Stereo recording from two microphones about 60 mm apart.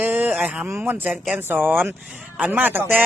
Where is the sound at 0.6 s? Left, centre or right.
Right.